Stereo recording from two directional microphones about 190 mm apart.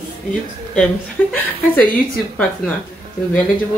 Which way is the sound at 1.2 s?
10° left (ahead or behind).